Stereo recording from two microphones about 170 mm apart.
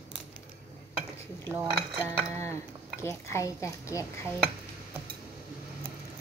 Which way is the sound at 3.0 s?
15° left (ahead or behind).